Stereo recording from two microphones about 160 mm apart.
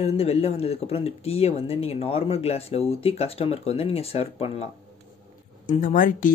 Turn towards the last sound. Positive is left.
turn(degrees=55)  # may be behind; listen again after turning